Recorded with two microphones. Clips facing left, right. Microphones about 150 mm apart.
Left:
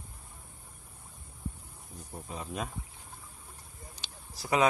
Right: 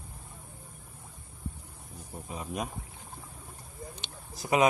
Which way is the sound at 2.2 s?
15° right (ahead or behind).